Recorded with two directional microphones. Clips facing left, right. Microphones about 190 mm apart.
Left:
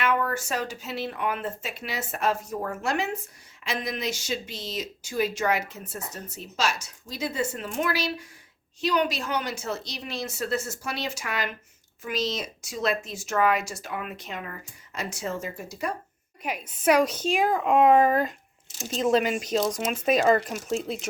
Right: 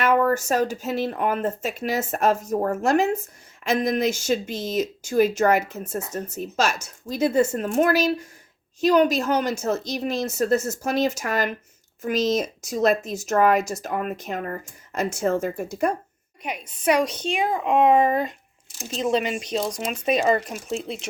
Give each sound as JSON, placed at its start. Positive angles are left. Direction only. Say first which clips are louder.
{"t": 0.0, "sound": "speech", "louder": "right 6 dB", "side_deg": -45}
{"t": 16.4, "sound": "speech", "louder": "even", "side_deg": 5}